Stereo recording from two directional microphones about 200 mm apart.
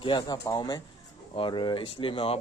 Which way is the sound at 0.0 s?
20° left (ahead or behind).